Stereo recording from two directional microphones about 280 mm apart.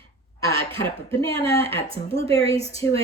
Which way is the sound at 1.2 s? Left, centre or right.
Centre.